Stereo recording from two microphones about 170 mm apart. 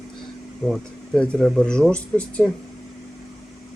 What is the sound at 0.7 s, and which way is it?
Speech, 5° left (ahead or behind).